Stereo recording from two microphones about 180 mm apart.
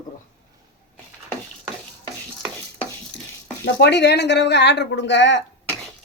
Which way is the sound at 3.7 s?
70° left (ahead or behind).